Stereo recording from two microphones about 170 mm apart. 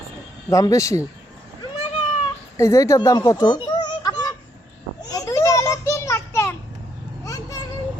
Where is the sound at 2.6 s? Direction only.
20° left (ahead or behind).